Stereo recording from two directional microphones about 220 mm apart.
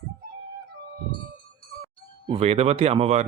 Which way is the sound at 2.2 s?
25° right (ahead or behind).